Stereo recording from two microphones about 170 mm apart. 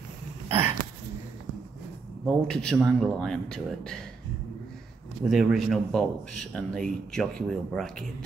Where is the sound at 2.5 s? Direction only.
5° left (ahead or behind).